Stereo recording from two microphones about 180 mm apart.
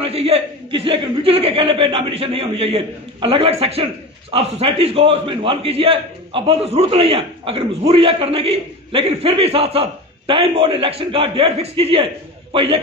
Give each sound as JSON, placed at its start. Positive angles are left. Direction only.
{"t": 0.0, "sound": "a man's voice", "side_deg": -35}